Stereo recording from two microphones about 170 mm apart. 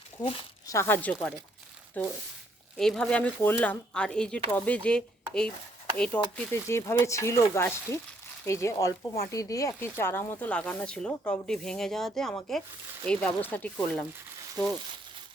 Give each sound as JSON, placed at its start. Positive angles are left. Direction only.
{"t": 0.2, "sound": "speech", "side_deg": 20}